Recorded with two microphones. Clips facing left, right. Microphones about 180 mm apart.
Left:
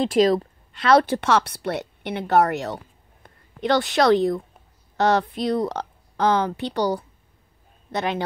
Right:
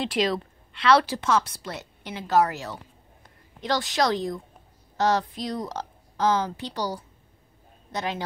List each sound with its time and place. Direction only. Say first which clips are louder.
0.0 s speech: left 7 dB; 45° left (ahead or behind); by 8.2 s 65° left (ahead or behind)